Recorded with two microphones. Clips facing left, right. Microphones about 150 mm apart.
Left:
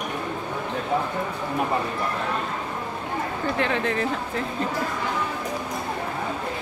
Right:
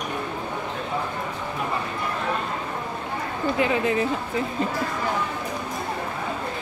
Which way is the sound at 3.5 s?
5° right (ahead or behind).